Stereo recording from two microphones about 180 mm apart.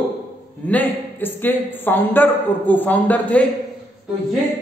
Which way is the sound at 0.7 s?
10° left (ahead or behind).